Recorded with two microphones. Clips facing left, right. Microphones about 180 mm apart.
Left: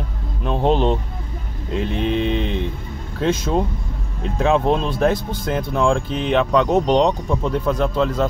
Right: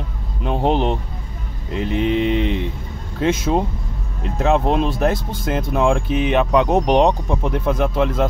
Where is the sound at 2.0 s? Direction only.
10° right (ahead or behind).